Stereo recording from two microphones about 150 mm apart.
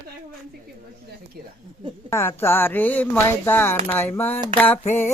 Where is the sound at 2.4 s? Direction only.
15° left (ahead or behind).